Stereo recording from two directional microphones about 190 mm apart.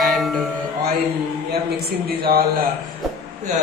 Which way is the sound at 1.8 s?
55° right (ahead or behind).